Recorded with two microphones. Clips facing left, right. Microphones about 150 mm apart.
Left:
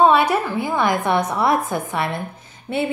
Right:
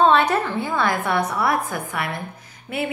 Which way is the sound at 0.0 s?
10° left (ahead or behind).